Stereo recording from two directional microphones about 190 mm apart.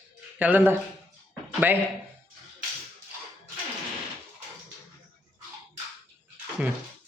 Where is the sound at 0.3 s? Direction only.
10° right (ahead or behind).